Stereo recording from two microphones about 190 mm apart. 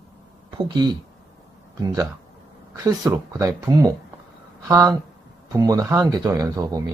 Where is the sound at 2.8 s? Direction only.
20° right (ahead or behind).